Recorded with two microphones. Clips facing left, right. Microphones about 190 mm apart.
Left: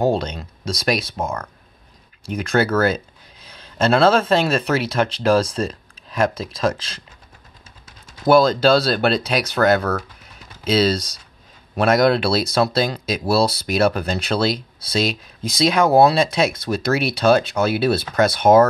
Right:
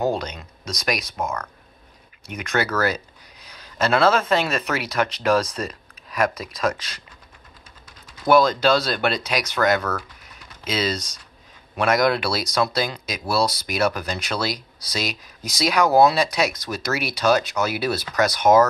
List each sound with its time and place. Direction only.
0.0 s speech: 30° left (ahead or behind)
8.3 s speech: 30° left (ahead or behind)